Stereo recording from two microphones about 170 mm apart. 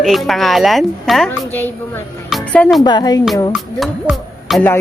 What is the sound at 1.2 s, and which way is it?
Speech, 15° left (ahead or behind).